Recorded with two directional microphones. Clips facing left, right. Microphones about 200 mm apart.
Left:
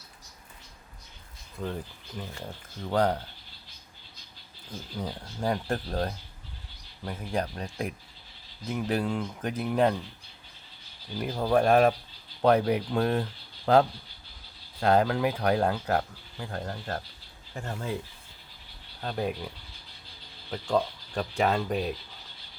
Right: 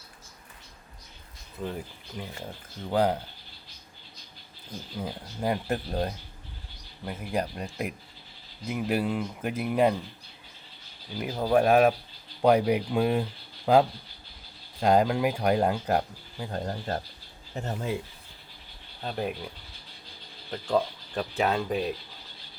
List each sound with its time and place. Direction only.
1.5 s speech: 10° right (ahead or behind)
4.9 s speech: 5° right (ahead or behind)
11.2 s speech: 5° right (ahead or behind)
19.0 s speech: 5° right (ahead or behind)
20.5 s speech: 5° right (ahead or behind)